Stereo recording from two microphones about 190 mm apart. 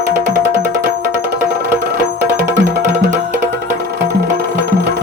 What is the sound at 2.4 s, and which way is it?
Music, 65° right (ahead or behind).